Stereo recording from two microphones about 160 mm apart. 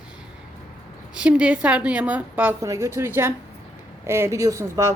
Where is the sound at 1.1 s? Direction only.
5° right (ahead or behind).